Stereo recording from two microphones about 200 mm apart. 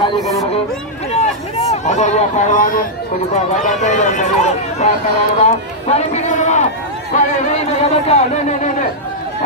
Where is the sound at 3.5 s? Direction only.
35° left (ahead or behind).